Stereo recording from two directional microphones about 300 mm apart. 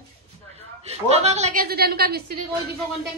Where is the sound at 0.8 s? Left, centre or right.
Right.